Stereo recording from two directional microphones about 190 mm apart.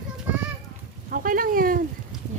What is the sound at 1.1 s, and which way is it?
Speech, 50° right (ahead or behind).